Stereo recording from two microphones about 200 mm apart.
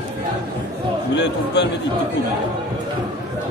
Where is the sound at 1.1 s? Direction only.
60° left (ahead or behind).